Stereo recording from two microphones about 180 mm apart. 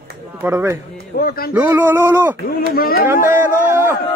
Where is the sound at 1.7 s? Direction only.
10° right (ahead or behind).